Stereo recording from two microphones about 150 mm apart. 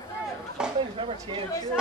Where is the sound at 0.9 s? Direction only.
35° right (ahead or behind).